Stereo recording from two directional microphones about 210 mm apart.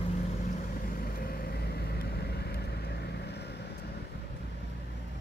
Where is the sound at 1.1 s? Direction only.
45° left (ahead or behind).